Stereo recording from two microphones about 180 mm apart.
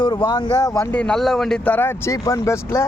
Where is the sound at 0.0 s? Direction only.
25° left (ahead or behind).